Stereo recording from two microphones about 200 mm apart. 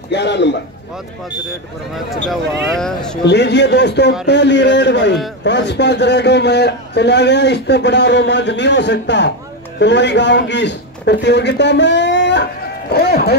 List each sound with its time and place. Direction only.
0.1 s a man's voice: 60° left (ahead or behind)
2.7 s speech: 5° left (ahead or behind)
3.3 s a man's voice: 55° left (ahead or behind)